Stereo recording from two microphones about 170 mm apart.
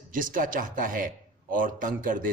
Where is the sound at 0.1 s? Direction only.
55° right (ahead or behind).